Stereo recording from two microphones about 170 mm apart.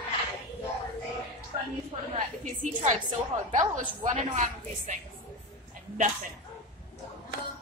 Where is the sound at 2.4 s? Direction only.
45° right (ahead or behind).